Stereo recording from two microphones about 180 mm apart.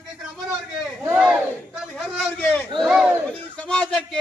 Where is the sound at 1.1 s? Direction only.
5° right (ahead or behind).